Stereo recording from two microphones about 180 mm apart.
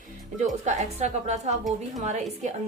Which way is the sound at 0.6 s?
40° right (ahead or behind).